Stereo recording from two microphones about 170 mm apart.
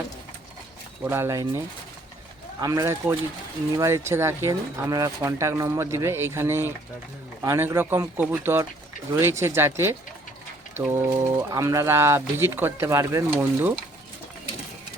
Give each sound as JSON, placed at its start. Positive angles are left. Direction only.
{"t": 1.1, "sound": "speech", "side_deg": -15}